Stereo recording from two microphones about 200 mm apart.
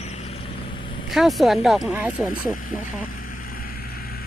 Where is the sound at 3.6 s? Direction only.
50° left (ahead or behind).